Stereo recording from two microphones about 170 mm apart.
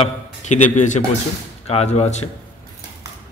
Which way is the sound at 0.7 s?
45° left (ahead or behind).